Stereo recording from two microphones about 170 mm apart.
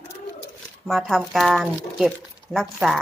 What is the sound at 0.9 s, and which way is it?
Speech, centre (ahead or behind).